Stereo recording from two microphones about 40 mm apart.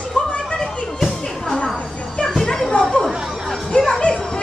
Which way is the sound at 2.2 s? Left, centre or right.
Centre.